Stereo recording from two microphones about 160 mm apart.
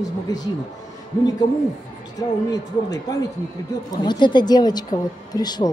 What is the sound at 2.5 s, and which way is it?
Speech, 20° left (ahead or behind).